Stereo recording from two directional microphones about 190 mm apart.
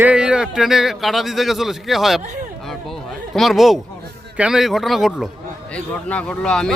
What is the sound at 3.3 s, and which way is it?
Speech, centre (ahead or behind).